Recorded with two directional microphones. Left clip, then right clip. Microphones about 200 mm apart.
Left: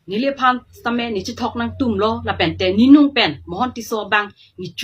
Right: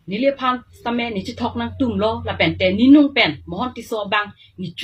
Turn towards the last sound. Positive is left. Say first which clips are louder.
# left 2 dB
turn(degrees=20)  # may be behind; listen again after turning